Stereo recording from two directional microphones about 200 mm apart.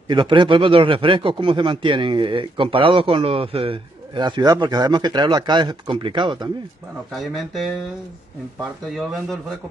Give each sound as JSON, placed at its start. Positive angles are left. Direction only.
{"t": 0.1, "sound": "speech", "side_deg": -25}
{"t": 7.1, "sound": "speech", "side_deg": 0}
{"t": 8.8, "sound": "speech", "side_deg": 0}